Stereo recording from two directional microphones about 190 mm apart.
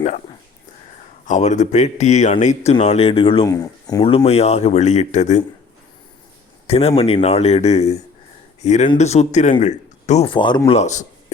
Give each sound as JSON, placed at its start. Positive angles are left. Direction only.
{"t": 1.3, "sound": "speech", "side_deg": 40}
{"t": 6.7, "sound": "speech", "side_deg": 30}
{"t": 10.8, "sound": "speech", "side_deg": 40}